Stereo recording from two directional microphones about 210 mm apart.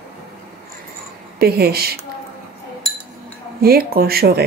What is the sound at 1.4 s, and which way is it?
Speech, 50° right (ahead or behind).